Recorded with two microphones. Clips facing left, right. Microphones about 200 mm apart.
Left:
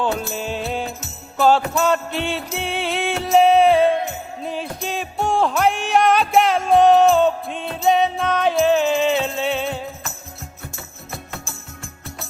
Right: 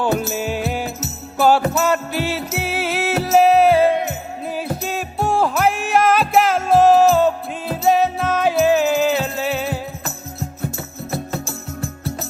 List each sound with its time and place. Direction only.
0.0 s music: 5° right (ahead or behind)
1.4 s jingle bell: 5° right (ahead or behind)
1.7 s music: 5° right (ahead or behind)
11.1 s music: 35° right (ahead or behind)